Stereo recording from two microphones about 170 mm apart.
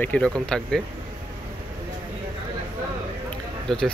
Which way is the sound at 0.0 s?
5° left (ahead or behind).